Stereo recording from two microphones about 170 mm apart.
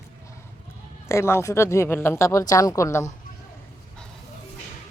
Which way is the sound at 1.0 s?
15° left (ahead or behind).